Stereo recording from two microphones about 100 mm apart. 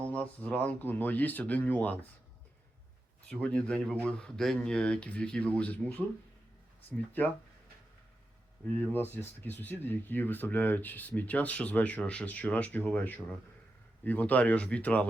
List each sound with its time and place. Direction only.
0.0 s speech: 15° left (ahead or behind)
3.2 s speech: 10° left (ahead or behind)
8.6 s speech: 15° left (ahead or behind)